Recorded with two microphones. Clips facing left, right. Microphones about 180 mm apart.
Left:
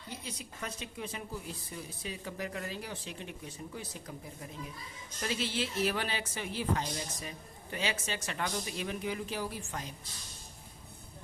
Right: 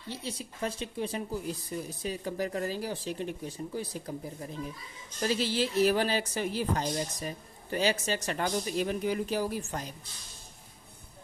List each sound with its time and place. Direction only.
0.1 s a woman's voice: 30° right (ahead or behind)